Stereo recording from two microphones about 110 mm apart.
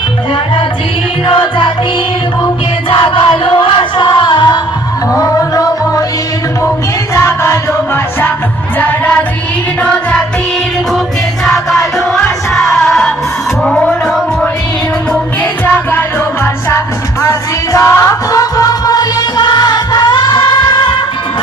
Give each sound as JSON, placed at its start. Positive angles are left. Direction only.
{"t": 1.3, "sound": "music", "side_deg": 50}
{"t": 2.9, "sound": "music", "side_deg": 50}
{"t": 5.1, "sound": "music", "side_deg": 30}
{"t": 7.1, "sound": "music", "side_deg": 25}
{"t": 8.8, "sound": "music", "side_deg": 15}
{"t": 11.4, "sound": "music", "side_deg": 0}
{"t": 15.6, "sound": "music", "side_deg": 20}
{"t": 17.2, "sound": "music", "side_deg": 30}